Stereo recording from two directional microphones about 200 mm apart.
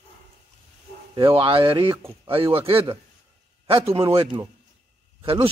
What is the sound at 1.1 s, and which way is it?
Speech, 25° right (ahead or behind).